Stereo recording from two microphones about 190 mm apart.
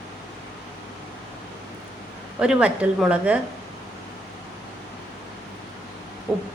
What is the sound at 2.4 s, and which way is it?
Speech, 5° right (ahead or behind).